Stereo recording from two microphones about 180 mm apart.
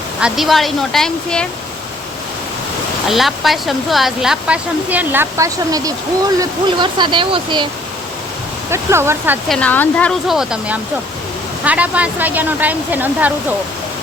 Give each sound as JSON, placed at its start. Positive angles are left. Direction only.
{"t": 0.2, "sound": "speech", "side_deg": -5}
{"t": 3.1, "sound": "speech", "side_deg": 0}
{"t": 8.7, "sound": "speech", "side_deg": -15}
{"t": 9.5, "sound": "speech", "side_deg": 10}